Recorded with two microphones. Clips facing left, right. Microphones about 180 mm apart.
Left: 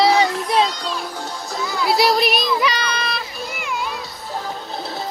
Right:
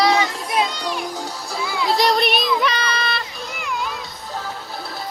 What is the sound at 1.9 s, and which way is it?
Music, 5° left (ahead or behind).